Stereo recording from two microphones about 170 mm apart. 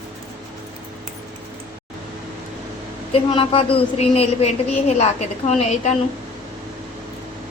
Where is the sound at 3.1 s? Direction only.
35° left (ahead or behind).